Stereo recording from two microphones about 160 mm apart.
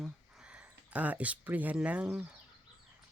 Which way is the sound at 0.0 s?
5° right (ahead or behind).